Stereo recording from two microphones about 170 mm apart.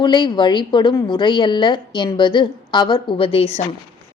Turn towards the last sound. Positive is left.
turn(degrees=35)  # may be behind; listen again after turning